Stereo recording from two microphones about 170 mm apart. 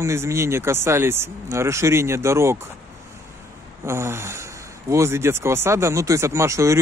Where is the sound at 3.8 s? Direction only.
15° right (ahead or behind).